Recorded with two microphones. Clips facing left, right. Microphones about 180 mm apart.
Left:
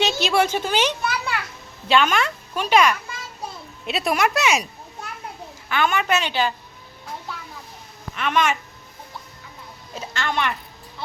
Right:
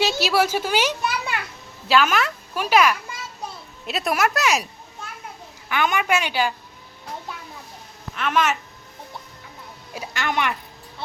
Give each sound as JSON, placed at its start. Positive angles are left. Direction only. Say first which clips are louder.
{"t": 0.0, "sound": "a child's voice", "louder": "even", "side_deg": -5}
{"t": 5.6, "sound": "a woman's voice", "louder": "left 1 dB", "side_deg": -15}
{"t": 8.1, "sound": "speech", "louder": "even", "side_deg": -5}
{"t": 9.9, "sound": "a woman's voice", "louder": "even", "side_deg": -15}